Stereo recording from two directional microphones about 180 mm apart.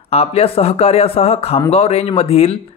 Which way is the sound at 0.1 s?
35° left (ahead or behind).